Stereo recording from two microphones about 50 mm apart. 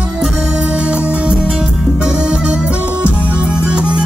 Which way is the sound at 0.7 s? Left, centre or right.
Right.